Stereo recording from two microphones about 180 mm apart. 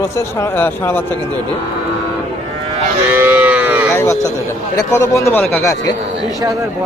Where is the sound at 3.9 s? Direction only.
15° left (ahead or behind).